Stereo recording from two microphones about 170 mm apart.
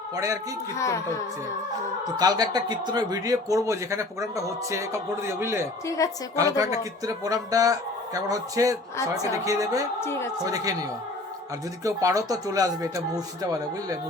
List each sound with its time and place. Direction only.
0.8 s speech: 15° left (ahead or behind)
2.1 s a man's voice: 25° right (ahead or behind)
6.0 s a woman's voice: 20° left (ahead or behind)
6.3 s a man's voice: 20° right (ahead or behind)
10.0 s speech: 15° left (ahead or behind)
10.4 s a man's voice: 20° right (ahead or behind)